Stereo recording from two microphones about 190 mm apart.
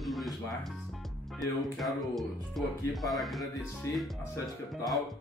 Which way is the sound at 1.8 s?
Centre (ahead or behind).